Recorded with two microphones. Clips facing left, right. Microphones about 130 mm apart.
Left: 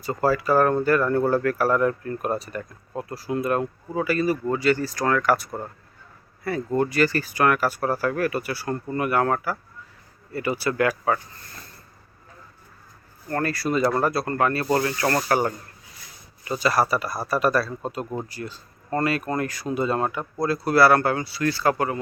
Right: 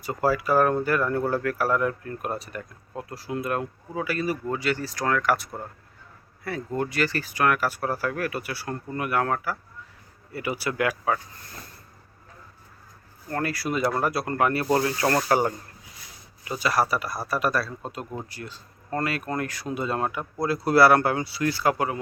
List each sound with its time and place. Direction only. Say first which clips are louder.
0.0 s speech: left 2 dB; 5° right (ahead or behind)
6.7 s speech: left 5 dB; centre (ahead or behind)
13.2 s speech: left 3 dB; 5° right (ahead or behind)
16.4 s speech: left 2 dB; 5° right (ahead or behind)
20.4 s speech: even; 15° right (ahead or behind)